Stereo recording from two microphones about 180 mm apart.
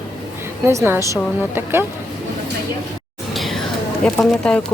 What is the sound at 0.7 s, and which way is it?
A woman's voice, 15° right (ahead or behind).